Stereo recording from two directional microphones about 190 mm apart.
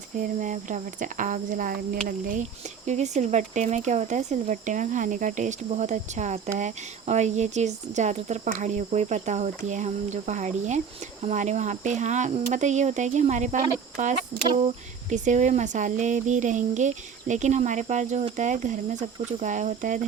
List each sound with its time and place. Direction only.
0.2 s speech: 40° right (ahead or behind)